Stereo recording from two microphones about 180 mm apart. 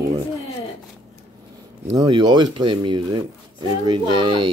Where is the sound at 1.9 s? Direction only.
25° right (ahead or behind).